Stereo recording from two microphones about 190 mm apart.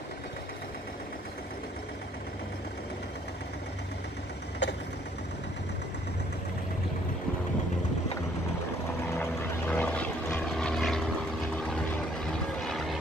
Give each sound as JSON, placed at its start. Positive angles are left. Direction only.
{"t": 4.6, "sound": "vehicle", "side_deg": 65}
{"t": 9.2, "sound": "vehicle", "side_deg": 10}